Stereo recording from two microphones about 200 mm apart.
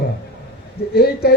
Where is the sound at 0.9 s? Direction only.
50° left (ahead or behind).